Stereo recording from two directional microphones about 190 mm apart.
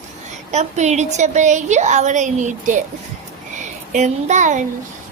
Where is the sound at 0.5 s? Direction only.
35° right (ahead or behind).